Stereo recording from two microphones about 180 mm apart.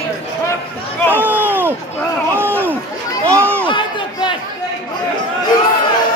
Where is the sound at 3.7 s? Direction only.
25° left (ahead or behind).